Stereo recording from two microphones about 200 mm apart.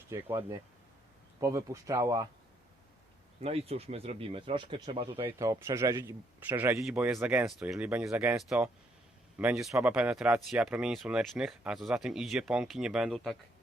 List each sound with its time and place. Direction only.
0.1 s speech: 20° right (ahead or behind)
3.4 s speech: 30° right (ahead or behind)
5.4 s speech: 15° right (ahead or behind); by 13.3 s centre (ahead or behind)